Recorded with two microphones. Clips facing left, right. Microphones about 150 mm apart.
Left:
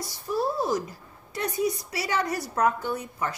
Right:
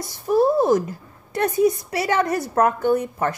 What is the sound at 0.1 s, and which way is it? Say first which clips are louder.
A woman's voice: right 11 dB; 50° right (ahead or behind).